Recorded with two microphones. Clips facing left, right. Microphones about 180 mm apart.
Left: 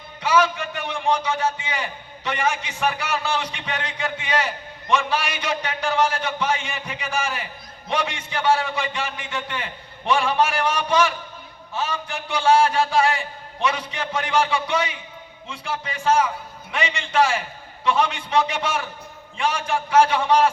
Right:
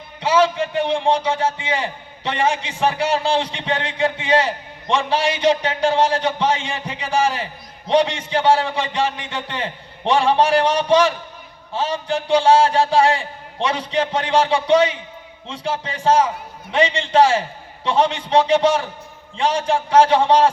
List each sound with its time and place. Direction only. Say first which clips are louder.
0.2 s a man's voice: right 3 dB; 30° right (ahead or behind)